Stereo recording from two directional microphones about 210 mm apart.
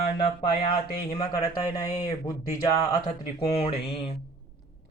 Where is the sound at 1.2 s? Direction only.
20° left (ahead or behind).